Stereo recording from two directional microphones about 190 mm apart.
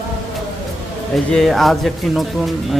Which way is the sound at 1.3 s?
Centre (ahead or behind).